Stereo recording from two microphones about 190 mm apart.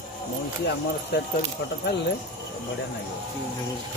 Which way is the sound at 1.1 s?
60° left (ahead or behind).